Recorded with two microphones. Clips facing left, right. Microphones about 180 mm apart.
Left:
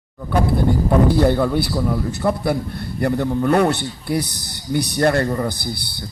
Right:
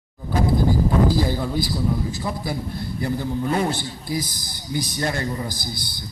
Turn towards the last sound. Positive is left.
turn(degrees=60)  # may be behind; listen again after turning